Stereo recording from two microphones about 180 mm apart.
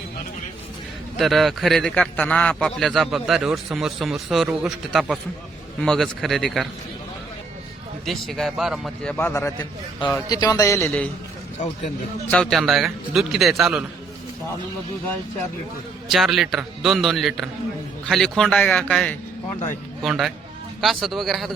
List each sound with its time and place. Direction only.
1.2 s a man's voice: centre (ahead or behind)
8.0 s a man's voice: centre (ahead or behind)
9.1 s a man's voice: 15° left (ahead or behind)
12.3 s a man's voice: 5° left (ahead or behind)
16.0 s a man's voice: centre (ahead or behind)